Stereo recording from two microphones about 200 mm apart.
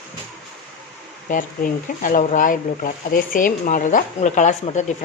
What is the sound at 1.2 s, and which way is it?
A woman's voice, 40° left (ahead or behind).